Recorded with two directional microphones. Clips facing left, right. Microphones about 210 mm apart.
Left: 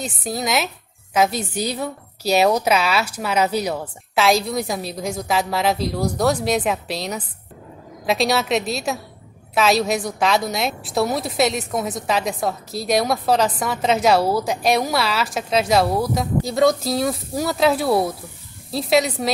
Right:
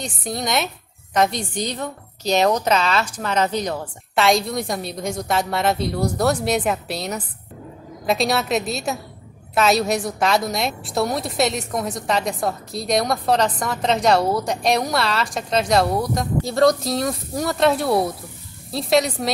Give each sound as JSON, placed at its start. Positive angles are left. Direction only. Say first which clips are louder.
{"t": 0.0, "sound": "a woman's voice", "louder": "left 1 dB", "side_deg": 5}